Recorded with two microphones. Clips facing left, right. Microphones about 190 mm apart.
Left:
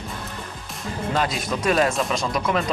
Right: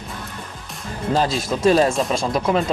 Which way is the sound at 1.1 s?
30° right (ahead or behind).